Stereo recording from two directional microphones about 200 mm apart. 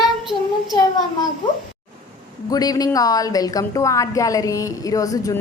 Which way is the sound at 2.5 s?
20° left (ahead or behind).